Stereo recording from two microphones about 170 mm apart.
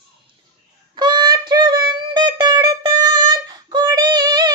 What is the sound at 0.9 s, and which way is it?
Music, 25° right (ahead or behind).